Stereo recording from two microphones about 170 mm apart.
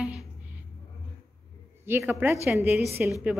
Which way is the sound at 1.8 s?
15° right (ahead or behind).